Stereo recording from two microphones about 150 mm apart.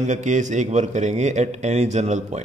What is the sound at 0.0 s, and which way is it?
Speech, 55° right (ahead or behind).